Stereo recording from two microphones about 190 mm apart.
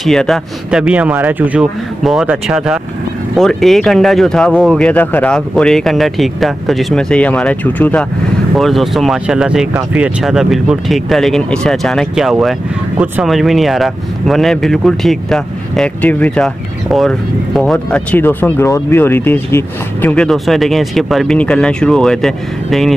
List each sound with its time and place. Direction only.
0.0 s speech: centre (ahead or behind)